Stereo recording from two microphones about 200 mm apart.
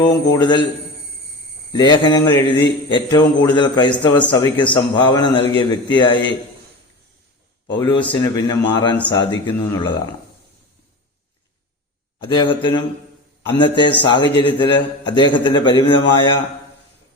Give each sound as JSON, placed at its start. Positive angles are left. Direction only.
{"t": 0.3, "sound": "a man's voice", "side_deg": 25}
{"t": 1.7, "sound": "a man's voice", "side_deg": 20}
{"t": 7.7, "sound": "a man's voice", "side_deg": 20}
{"t": 12.2, "sound": "a man's voice", "side_deg": 25}